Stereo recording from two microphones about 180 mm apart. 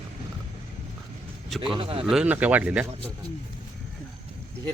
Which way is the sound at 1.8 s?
30° right (ahead or behind).